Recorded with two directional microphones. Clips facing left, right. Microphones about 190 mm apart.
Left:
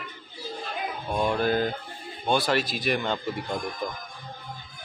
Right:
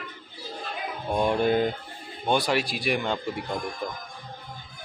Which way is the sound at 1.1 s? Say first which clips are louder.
Right 2 dB; 20° right (ahead or behind).